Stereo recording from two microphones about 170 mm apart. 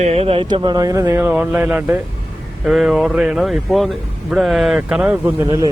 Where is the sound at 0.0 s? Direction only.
40° right (ahead or behind); by 5.5 s 10° right (ahead or behind).